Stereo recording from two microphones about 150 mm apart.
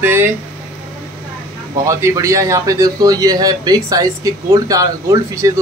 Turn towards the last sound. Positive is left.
turn(degrees=-20)  # may be behind; listen again after turning